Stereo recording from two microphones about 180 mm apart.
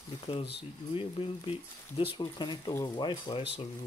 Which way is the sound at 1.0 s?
30° left (ahead or behind).